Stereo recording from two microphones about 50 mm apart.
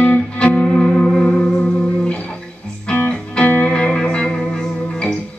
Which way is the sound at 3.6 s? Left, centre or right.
Centre.